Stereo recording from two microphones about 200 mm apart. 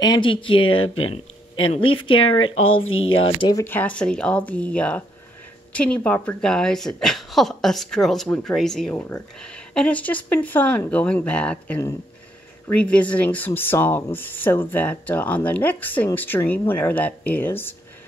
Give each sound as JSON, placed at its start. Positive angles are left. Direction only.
{"t": 0.0, "sound": "speech", "side_deg": 20}
{"t": 0.7, "sound": "speech", "side_deg": 90}
{"t": 1.7, "sound": "speech", "side_deg": 25}
{"t": 2.1, "sound": "speech", "side_deg": 90}
{"t": 3.3, "sound": "a woman's voice", "side_deg": 20}